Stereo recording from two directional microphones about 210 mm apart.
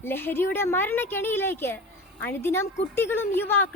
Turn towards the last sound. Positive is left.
turn(degrees=10)  # may be behind; listen again after turning